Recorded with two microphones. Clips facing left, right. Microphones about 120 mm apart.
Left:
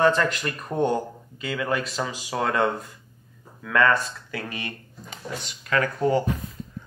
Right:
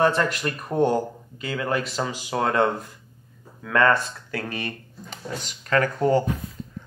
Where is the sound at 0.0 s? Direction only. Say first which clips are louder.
Even; 15° right (ahead or behind).